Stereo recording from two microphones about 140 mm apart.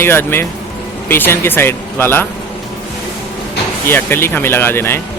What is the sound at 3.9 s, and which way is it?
Speech, 15° left (ahead or behind).